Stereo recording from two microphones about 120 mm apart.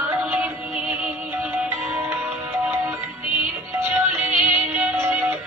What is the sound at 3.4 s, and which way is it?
Music, 15° right (ahead or behind).